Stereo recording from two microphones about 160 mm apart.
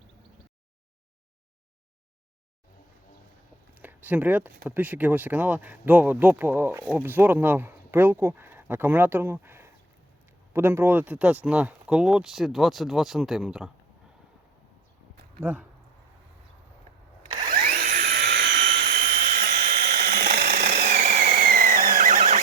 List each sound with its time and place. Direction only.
3.8 s speech: 10° right (ahead or behind)
15.4 s speech: 10° right (ahead or behind)
17.2 s drill: 25° right (ahead or behind)
17.5 s helicopter: 65° right (ahead or behind); by 18.9 s 90° right
19.4 s tools: 75° right (ahead or behind)
20.9 s a sound: 45° right (ahead or behind)
21.2 s a sound: 75° right (ahead or behind); by 22.4 s 50° right (ahead or behind)